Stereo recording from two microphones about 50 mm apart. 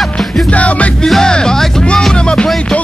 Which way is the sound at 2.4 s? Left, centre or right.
Centre.